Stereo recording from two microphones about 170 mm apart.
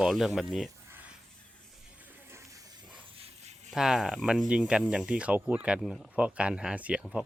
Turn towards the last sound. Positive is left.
turn(degrees=-5)  # may be behind; listen again after turning